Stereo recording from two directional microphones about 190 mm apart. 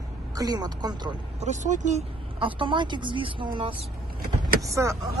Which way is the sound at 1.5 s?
40° right (ahead or behind).